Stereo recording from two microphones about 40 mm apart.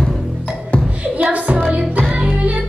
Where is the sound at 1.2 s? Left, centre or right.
Right.